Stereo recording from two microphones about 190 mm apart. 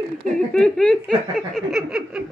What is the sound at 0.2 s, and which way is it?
Speech, 40° right (ahead or behind).